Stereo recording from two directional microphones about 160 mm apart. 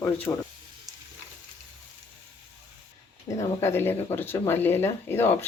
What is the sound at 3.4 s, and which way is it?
Speech, 15° left (ahead or behind).